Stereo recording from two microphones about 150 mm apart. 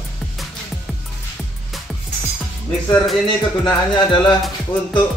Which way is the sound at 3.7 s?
30° left (ahead or behind).